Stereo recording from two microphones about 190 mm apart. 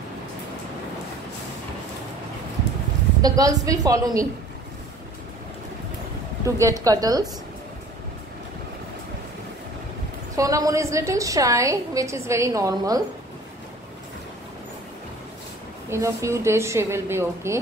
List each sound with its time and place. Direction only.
3.2 s a woman's voice: 20° right (ahead or behind)
6.4 s a woman's voice: 15° right (ahead or behind)
10.3 s a woman's voice: 15° right (ahead or behind)
15.9 s a woman's voice: 15° right (ahead or behind)